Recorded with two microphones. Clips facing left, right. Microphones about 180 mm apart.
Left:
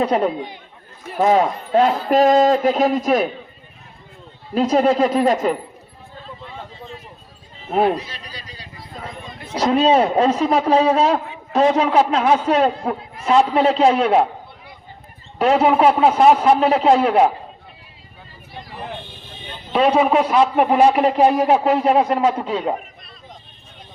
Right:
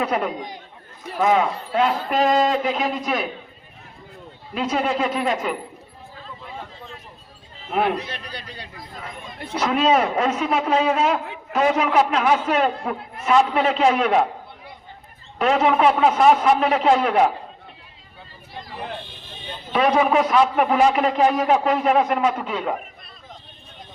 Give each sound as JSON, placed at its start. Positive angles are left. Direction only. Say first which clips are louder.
{"t": 0.0, "sound": "a man's voice", "louder": "left 5 dB", "side_deg": 30}
{"t": 4.5, "sound": "a man's voice", "louder": "left 7 dB", "side_deg": 40}
{"t": 7.9, "sound": "a man's voice", "louder": "right 1 dB", "side_deg": -60}
{"t": 9.6, "sound": "a man's voice", "louder": "left 4 dB", "side_deg": 30}
{"t": 15.4, "sound": "a man's voice", "louder": "left 3 dB", "side_deg": 35}
{"t": 19.7, "sound": "a man's voice", "louder": "left 3 dB", "side_deg": 30}